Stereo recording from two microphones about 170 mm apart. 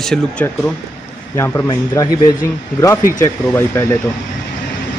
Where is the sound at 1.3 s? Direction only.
15° left (ahead or behind).